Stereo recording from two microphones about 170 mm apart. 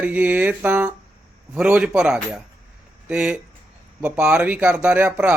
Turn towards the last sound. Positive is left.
turn(degrees=-10)  # may be behind; listen again after turning